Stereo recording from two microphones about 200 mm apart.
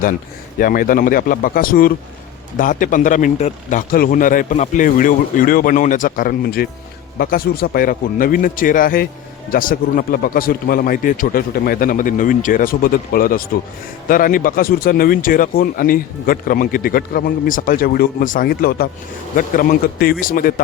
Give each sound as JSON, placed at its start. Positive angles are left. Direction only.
{"t": 0.6, "sound": "speech", "side_deg": 45}